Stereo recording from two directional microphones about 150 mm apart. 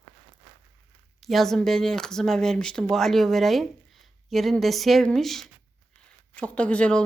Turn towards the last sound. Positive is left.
turn(degrees=10)  # may be behind; listen again after turning